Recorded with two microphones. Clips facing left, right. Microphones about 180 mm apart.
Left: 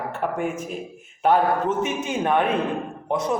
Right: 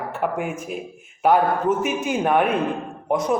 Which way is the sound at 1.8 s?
10° right (ahead or behind).